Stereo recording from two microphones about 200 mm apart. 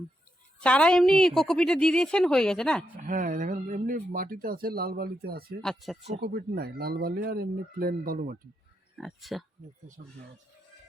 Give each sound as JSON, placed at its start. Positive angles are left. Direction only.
{"t": 0.6, "sound": "a woman's voice", "side_deg": 5}
{"t": 3.1, "sound": "speech", "side_deg": -40}
{"t": 5.6, "sound": "a woman's voice", "side_deg": 0}
{"t": 6.1, "sound": "speech", "side_deg": -50}
{"t": 9.0, "sound": "a woman's voice", "side_deg": 0}